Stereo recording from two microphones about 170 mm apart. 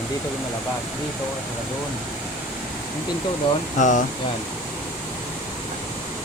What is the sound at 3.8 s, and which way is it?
Speech, 50° left (ahead or behind).